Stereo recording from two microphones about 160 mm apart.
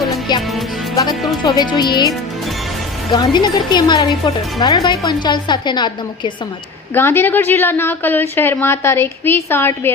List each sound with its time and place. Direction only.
0.3 s a woman's voice: 30° left (ahead or behind)
6.9 s a woman's voice: 15° left (ahead or behind)